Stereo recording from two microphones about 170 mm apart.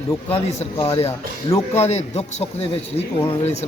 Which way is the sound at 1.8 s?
40° left (ahead or behind).